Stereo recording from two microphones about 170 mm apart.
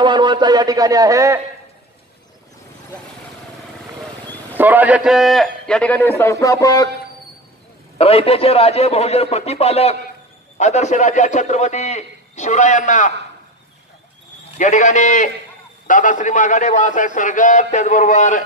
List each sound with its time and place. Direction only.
0.0 s a man's voice: 25° right (ahead or behind)
4.6 s a man's voice: 10° right (ahead or behind); by 6.9 s 20° left (ahead or behind)
8.0 s a man's voice: 35° left (ahead or behind)
14.6 s a man's voice: 45° left (ahead or behind)